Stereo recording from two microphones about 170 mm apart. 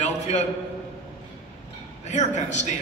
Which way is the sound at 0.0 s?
45° left (ahead or behind).